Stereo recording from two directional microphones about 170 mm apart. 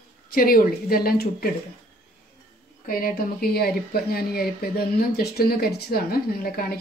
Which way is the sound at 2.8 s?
60° left (ahead or behind).